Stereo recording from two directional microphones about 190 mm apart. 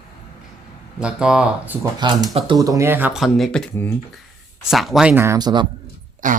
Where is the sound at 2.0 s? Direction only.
25° right (ahead or behind).